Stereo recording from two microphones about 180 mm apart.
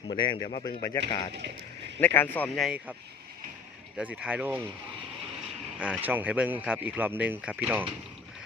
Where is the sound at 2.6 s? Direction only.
10° right (ahead or behind).